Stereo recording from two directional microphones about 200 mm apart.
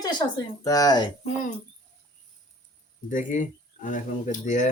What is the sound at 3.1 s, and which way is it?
Speech, 40° left (ahead or behind).